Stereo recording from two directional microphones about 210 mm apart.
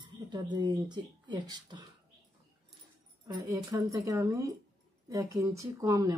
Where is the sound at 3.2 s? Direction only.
20° right (ahead or behind).